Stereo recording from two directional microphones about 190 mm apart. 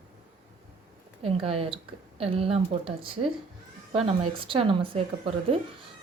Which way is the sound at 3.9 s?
25° right (ahead or behind).